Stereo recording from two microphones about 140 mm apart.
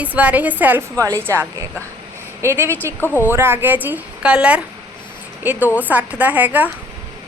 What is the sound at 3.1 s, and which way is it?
A woman's voice, 15° right (ahead or behind).